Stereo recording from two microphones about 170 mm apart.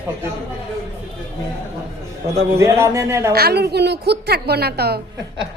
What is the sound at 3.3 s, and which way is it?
A woman's voice, 70° right (ahead or behind).